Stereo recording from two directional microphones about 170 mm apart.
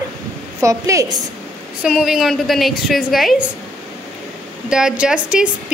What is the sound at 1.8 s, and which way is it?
A woman's voice, centre (ahead or behind).